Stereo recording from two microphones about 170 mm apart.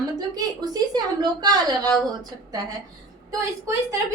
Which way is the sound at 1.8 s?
10° left (ahead or behind).